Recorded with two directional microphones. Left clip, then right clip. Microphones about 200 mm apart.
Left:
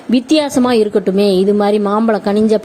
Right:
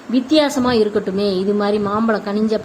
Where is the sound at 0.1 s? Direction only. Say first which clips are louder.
Left 2 dB; 35° left (ahead or behind).